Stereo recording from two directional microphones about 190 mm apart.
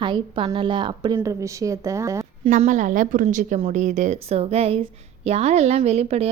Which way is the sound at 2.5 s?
40° right (ahead or behind).